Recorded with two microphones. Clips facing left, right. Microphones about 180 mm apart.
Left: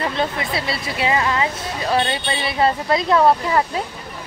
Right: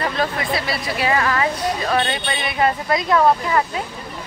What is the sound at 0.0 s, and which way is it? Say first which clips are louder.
Speech: even; 25° left (ahead or behind).